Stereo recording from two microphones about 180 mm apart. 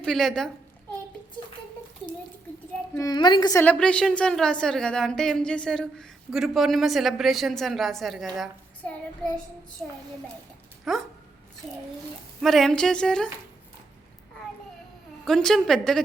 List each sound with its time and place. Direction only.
0.0 s a woman's voice: 5° left (ahead or behind)
3.0 s a woman's voice: 25° left (ahead or behind)
3.6 s a woman's voice: 5° left (ahead or behind)
9.8 s a child's voice: 5° left (ahead or behind)
12.4 s a woman's voice: centre (ahead or behind)
15.2 s a woman's voice: centre (ahead or behind)